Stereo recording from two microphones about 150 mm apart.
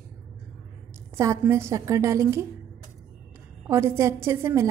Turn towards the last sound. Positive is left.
turn(degrees=-15)  # may be behind; listen again after turning